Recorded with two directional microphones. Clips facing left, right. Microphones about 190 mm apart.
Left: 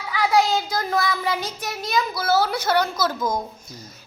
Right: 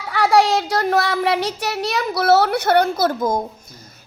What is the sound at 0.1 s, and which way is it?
Child singing, 75° right (ahead or behind).